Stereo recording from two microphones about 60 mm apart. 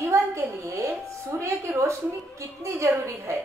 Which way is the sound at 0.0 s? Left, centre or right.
Right.